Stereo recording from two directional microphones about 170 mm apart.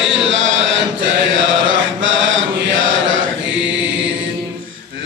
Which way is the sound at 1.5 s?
90° right.